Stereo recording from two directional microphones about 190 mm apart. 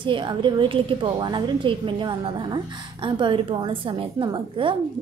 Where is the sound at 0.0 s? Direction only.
25° right (ahead or behind).